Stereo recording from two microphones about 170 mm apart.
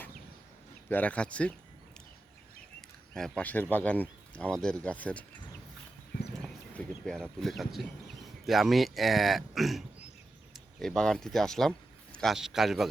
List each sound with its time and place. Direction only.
0.9 s speech: 10° left (ahead or behind)
3.2 s speech: 5° left (ahead or behind)
6.4 s speech: 5° left (ahead or behind)